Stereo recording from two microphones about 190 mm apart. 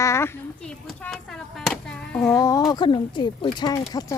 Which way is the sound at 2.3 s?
20° left (ahead or behind).